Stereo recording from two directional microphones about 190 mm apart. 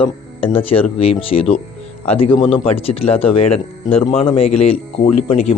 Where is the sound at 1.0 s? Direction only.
30° left (ahead or behind).